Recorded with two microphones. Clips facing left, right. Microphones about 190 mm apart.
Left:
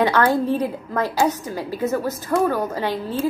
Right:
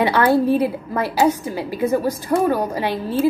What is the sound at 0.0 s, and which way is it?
A woman's voice, 10° right (ahead or behind).